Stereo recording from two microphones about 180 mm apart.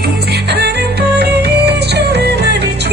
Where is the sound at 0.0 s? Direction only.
65° right (ahead or behind).